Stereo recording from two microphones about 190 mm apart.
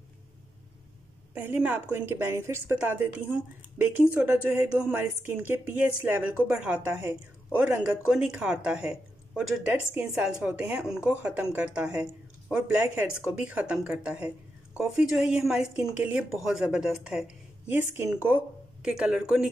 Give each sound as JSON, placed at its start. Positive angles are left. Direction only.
{"t": 1.3, "sound": "a woman's voice", "side_deg": -10}